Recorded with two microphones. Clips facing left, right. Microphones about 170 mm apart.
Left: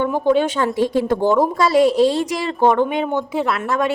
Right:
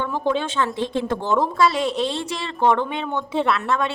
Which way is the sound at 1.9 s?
20° right (ahead or behind).